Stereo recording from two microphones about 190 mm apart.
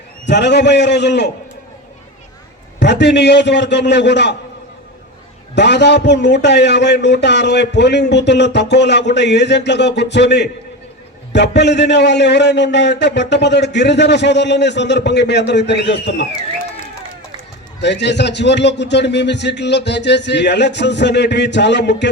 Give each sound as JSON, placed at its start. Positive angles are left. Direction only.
{"t": 0.3, "sound": "a man's voice", "side_deg": 65}
{"t": 2.7, "sound": "a man's voice", "side_deg": 65}
{"t": 5.5, "sound": "a man's voice", "side_deg": 65}
{"t": 17.7, "sound": "a man's voice", "side_deg": 65}